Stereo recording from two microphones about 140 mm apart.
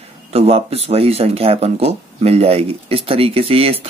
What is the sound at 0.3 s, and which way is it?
Speech, 45° right (ahead or behind).